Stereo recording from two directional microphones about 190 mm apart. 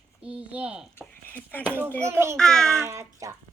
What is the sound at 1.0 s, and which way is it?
Speech, 10° left (ahead or behind).